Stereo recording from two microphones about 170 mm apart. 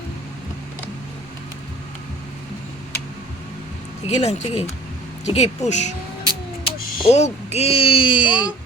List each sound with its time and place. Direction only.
4.0 s speech: 40° left (ahead or behind)
6.7 s a sound: 60° left (ahead or behind)
7.1 s speech: 40° left (ahead or behind)